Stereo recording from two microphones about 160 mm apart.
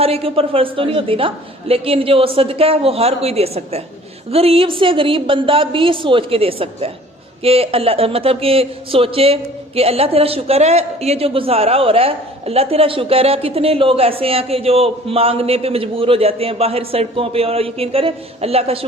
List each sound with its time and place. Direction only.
0.0 s speech: 35° right (ahead or behind)